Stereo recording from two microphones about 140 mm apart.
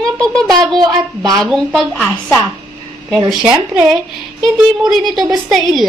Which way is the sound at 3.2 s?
5° right (ahead or behind).